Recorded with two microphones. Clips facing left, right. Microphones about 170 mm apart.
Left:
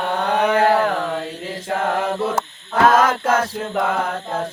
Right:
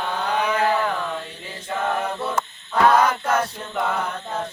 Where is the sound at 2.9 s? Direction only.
90° left.